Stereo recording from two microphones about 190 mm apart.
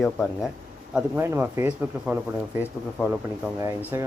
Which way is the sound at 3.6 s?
15° right (ahead or behind).